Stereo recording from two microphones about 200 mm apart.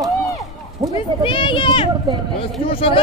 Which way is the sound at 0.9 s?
25° left (ahead or behind).